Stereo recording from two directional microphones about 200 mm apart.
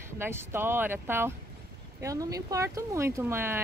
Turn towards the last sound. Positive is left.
turn(degrees=-10)  # may be behind; listen again after turning